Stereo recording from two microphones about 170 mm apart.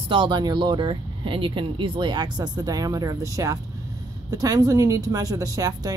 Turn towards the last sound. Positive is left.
turn(degrees=-20)  # may be behind; listen again after turning